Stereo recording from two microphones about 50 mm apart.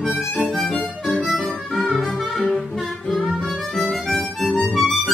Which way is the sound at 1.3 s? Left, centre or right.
Left.